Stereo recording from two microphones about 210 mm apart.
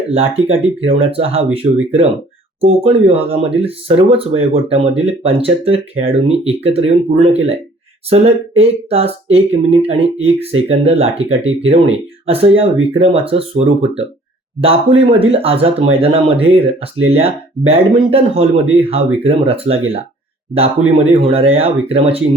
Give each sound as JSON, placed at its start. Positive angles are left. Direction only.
{"t": 0.1, "sound": "speech", "side_deg": -30}